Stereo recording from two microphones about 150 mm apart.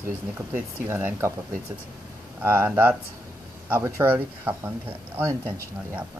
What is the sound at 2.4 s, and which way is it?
Speech, 15° right (ahead or behind).